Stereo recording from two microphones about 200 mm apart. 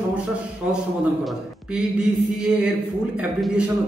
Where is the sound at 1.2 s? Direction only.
5° right (ahead or behind).